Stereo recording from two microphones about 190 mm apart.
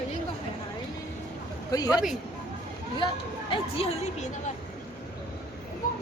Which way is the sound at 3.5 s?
30° left (ahead or behind).